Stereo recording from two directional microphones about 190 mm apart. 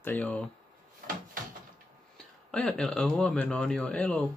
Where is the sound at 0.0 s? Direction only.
10° left (ahead or behind).